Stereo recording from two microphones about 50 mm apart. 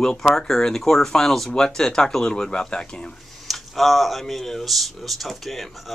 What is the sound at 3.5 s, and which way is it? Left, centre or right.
Speech, centre.